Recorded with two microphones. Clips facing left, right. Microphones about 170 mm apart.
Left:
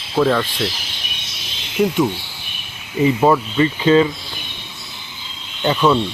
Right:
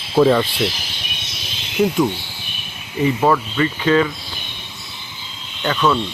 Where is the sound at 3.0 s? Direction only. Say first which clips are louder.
Left 2 dB; 15° left (ahead or behind).